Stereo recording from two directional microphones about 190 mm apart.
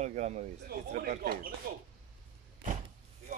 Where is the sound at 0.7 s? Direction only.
55° right (ahead or behind).